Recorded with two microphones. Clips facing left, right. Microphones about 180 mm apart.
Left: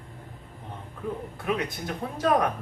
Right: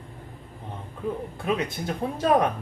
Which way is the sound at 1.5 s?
25° right (ahead or behind).